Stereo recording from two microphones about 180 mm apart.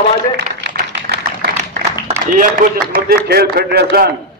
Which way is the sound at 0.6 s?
75° right (ahead or behind).